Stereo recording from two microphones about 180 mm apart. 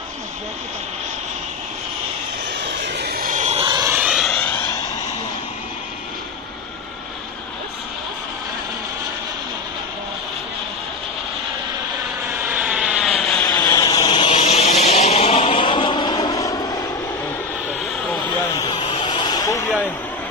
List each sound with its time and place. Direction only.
2.6 s vehicle: 75° right (ahead or behind); by 3.6 s 40° right (ahead or behind)
3.6 s vehicle: 20° right (ahead or behind)
3.9 s vehicle: 5° right (ahead or behind); by 4.6 s 10° left (ahead or behind)
12.3 s vehicle: 10° right (ahead or behind)
13.4 s a sound: 20° left (ahead or behind)
14.4 s vehicle: 35° left (ahead or behind); by 16.8 s 20° left (ahead or behind)
18.5 s a sound: 25° left (ahead or behind)